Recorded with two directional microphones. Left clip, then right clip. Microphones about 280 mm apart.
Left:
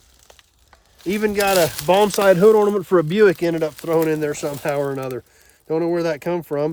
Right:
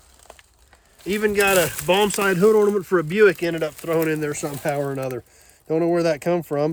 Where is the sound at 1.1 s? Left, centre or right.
Left.